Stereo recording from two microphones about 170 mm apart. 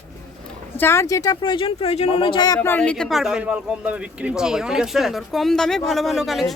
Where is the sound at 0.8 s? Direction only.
15° left (ahead or behind).